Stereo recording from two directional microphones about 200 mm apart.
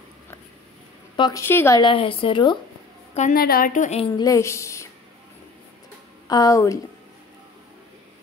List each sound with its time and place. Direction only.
1.1 s a woman's voice: 25° left (ahead or behind)
1.4 s speech: 10° left (ahead or behind)
1.8 s speech: 25° left (ahead or behind)
3.2 s a woman's voice: 45° left (ahead or behind)
4.2 s speech: 15° left (ahead or behind)
6.2 s speech: 20° left (ahead or behind)